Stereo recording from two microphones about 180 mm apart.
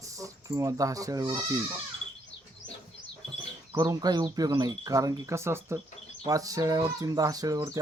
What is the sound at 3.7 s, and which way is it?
Speech, 20° right (ahead or behind).